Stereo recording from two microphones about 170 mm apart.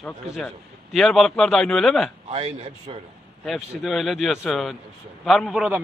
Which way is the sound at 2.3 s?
35° right (ahead or behind).